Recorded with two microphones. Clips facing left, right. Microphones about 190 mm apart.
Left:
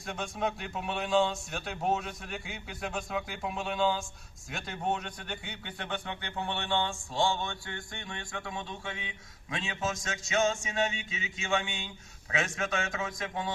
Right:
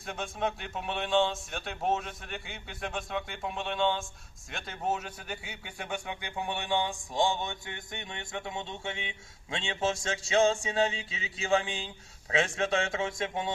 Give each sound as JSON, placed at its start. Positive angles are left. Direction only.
{"t": 0.0, "sound": "a man's voice", "side_deg": 0}